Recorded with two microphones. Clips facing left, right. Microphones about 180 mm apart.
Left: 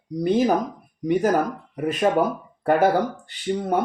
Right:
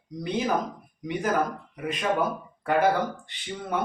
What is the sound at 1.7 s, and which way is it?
Speech, 45° left (ahead or behind).